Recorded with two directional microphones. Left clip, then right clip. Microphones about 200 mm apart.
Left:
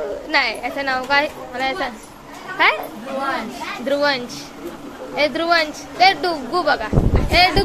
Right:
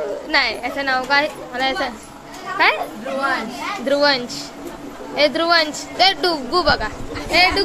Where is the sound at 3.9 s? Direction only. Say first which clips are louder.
Right 2 dB; 5° right (ahead or behind).